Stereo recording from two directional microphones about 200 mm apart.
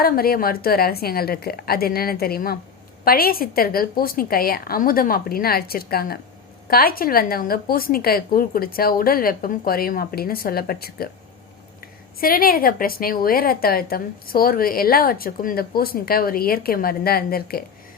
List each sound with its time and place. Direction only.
0.0 s a woman's voice: 50° left (ahead or behind)
12.2 s a woman's voice: 45° left (ahead or behind)